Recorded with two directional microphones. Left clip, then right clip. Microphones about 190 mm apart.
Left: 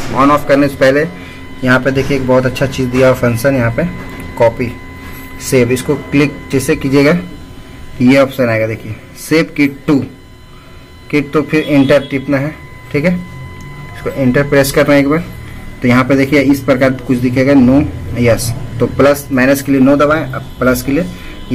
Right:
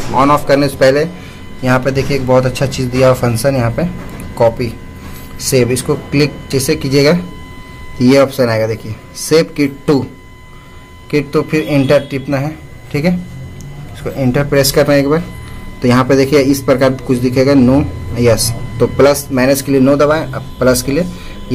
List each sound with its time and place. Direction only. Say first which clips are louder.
0.1 s a man's voice: even; 10° right (ahead or behind)
11.1 s a man's voice: left 1 dB; 10° right (ahead or behind)